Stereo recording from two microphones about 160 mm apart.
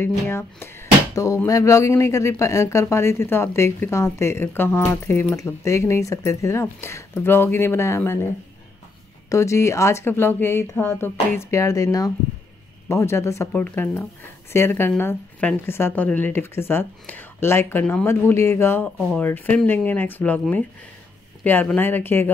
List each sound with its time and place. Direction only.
0.0 s speech: 15° left (ahead or behind)
9.3 s speech: 20° left (ahead or behind)